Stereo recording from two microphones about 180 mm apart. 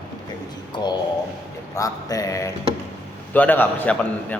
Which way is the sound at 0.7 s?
25° left (ahead or behind).